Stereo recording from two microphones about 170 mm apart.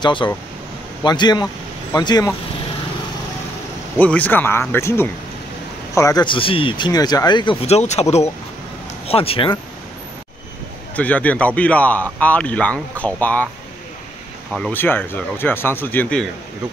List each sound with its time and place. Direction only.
0.0 s speech: 30° left (ahead or behind)
4.0 s speech: 10° left (ahead or behind); by 7.5 s 25° left (ahead or behind)
7.6 s speech: 40° left (ahead or behind)
11.0 s speech: 10° left (ahead or behind)
14.7 s speech: 10° left (ahead or behind)